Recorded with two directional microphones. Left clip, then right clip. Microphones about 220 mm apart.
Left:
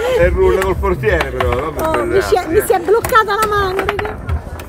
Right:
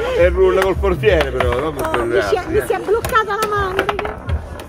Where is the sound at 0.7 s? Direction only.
40° right (ahead or behind).